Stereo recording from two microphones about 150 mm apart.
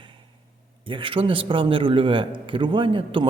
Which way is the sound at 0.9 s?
35° right (ahead or behind).